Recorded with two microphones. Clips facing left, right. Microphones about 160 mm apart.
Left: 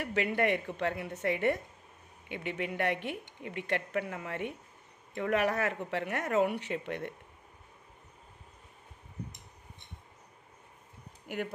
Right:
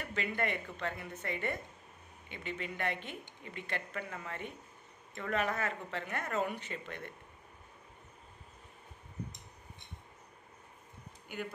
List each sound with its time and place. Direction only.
0.0 s a woman's voice: 70° left (ahead or behind)